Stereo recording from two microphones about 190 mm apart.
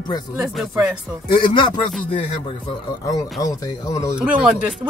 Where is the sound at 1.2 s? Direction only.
25° left (ahead or behind).